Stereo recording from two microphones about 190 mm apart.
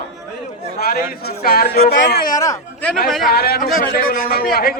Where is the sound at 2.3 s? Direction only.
15° left (ahead or behind).